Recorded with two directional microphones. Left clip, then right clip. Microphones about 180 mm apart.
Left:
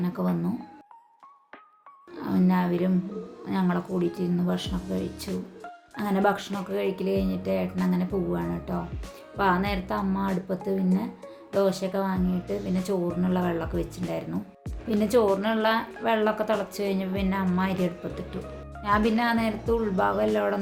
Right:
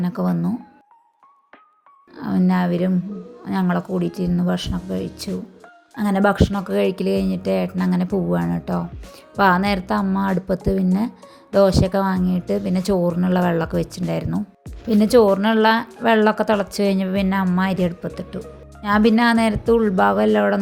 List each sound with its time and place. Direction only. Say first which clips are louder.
0.0 s speech: right 5 dB; 40° right (ahead or behind)
2.1 s speech: right 4 dB; 35° right (ahead or behind)
12.5 s speech: right 8 dB; centre (ahead or behind)
12.8 s speech: right 8 dB; 45° right (ahead or behind)
19.1 s speech: right 8 dB; 55° right (ahead or behind)